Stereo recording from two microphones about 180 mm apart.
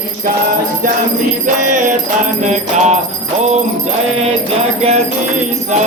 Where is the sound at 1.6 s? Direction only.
45° right (ahead or behind).